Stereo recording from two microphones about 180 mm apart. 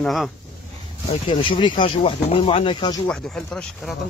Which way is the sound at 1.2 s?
25° left (ahead or behind).